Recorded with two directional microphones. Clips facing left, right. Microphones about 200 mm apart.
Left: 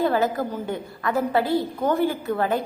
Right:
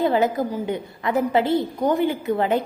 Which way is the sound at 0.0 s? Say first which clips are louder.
Right 2 dB; 20° right (ahead or behind).